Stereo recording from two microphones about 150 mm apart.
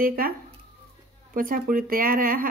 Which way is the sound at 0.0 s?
75° right (ahead or behind).